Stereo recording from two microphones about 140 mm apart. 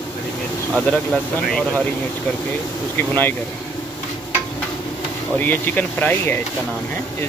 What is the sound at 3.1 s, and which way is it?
Speech, 15° left (ahead or behind).